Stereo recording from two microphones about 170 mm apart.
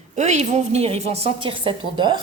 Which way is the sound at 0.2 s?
45° right (ahead or behind).